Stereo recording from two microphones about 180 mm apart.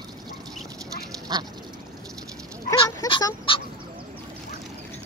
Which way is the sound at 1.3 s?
20° right (ahead or behind).